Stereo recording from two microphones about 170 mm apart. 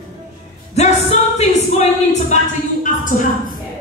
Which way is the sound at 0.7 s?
40° left (ahead or behind).